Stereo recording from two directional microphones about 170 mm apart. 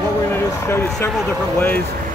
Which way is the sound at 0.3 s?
15° left (ahead or behind).